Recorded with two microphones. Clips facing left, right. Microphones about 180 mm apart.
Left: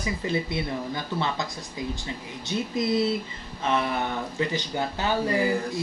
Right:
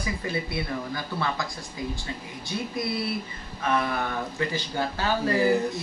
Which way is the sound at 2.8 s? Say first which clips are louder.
Left 6 dB; 20° left (ahead or behind).